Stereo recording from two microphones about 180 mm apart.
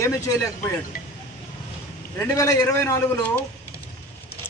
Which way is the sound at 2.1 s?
15° left (ahead or behind).